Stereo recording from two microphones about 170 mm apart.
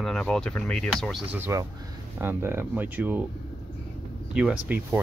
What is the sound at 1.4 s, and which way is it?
Speech, 15° right (ahead or behind).